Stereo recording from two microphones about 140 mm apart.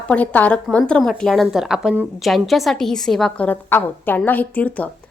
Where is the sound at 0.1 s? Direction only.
10° left (ahead or behind).